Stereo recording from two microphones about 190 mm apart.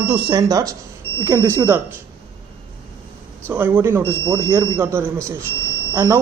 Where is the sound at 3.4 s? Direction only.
10° right (ahead or behind).